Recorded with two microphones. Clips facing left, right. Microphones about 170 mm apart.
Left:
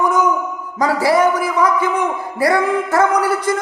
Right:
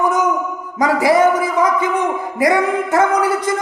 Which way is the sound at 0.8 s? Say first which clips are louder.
Right 1 dB; 15° right (ahead or behind).